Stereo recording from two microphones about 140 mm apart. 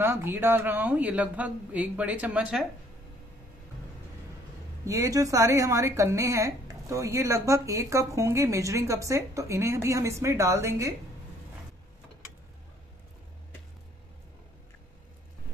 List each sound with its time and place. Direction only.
0.0 s speech: 15° right (ahead or behind)
4.8 s a woman's voice: 20° right (ahead or behind)